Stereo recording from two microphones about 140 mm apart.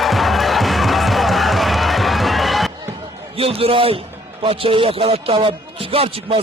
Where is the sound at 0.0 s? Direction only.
Centre (ahead or behind).